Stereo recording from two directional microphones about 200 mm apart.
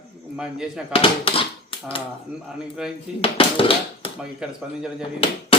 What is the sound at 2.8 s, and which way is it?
Speech, 5° right (ahead or behind).